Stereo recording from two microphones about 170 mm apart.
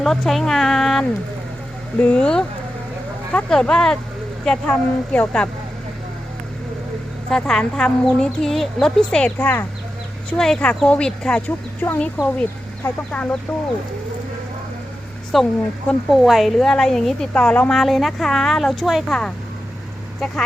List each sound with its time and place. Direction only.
0.0 s a woman's voice: centre (ahead or behind)
7.3 s a woman's voice: 5° left (ahead or behind)
15.3 s a woman's voice: centre (ahead or behind)